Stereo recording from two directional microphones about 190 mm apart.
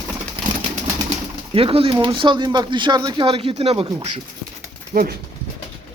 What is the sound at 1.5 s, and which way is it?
Speech, 30° right (ahead or behind).